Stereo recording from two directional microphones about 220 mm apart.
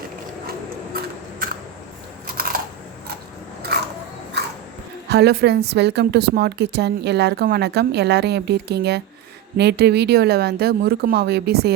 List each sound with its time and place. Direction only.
2.2 s camera: 40° right (ahead or behind)
3.6 s a sound: 45° right (ahead or behind)
5.0 s speech: 50° right (ahead or behind)